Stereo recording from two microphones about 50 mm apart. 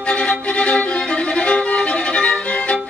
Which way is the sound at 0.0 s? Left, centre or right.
Centre.